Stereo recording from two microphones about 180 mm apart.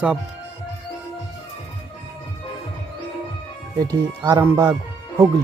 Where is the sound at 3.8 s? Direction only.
20° right (ahead or behind).